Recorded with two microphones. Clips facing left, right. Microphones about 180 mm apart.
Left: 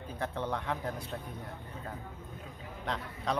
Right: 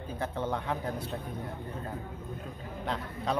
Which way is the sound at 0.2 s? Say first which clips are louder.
Right 2 dB; 5° right (ahead or behind).